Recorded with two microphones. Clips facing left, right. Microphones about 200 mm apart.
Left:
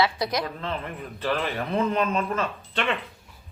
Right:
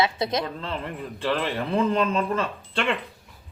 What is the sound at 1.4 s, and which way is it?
Speech, 30° right (ahead or behind).